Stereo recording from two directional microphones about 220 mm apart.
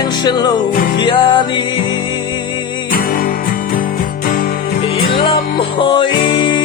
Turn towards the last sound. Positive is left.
turn(degrees=20)  # may be behind; listen again after turning